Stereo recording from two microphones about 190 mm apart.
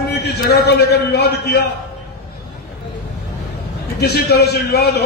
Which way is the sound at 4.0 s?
60° left (ahead or behind).